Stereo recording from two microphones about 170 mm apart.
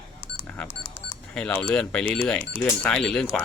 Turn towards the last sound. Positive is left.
turn(degrees=5)  # may be behind; listen again after turning